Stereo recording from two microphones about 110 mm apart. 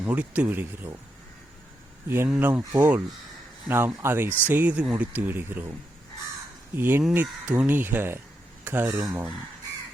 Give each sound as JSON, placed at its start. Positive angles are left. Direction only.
{"t": 0.0, "sound": "speech", "side_deg": -15}
{"t": 2.0, "sound": "speech", "side_deg": -20}
{"t": 6.7, "sound": "speech", "side_deg": -20}